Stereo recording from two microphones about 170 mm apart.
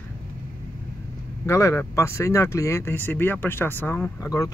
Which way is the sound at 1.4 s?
15° left (ahead or behind).